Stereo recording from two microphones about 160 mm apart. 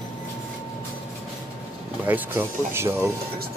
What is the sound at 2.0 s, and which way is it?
Speech, 15° right (ahead or behind).